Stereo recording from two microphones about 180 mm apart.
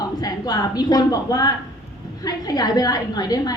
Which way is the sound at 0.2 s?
20° left (ahead or behind).